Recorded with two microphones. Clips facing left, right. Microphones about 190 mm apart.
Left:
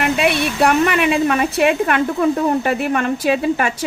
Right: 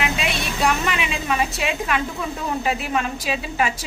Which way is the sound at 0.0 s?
60° left (ahead or behind).